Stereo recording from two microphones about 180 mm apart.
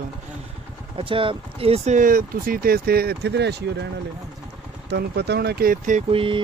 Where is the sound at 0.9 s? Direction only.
30° right (ahead or behind); by 3.8 s 70° right (ahead or behind).